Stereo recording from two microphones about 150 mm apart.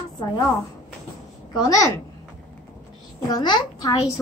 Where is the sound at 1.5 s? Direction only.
25° left (ahead or behind).